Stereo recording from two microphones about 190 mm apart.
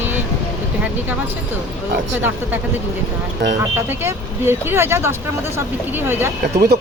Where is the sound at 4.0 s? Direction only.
15° right (ahead or behind).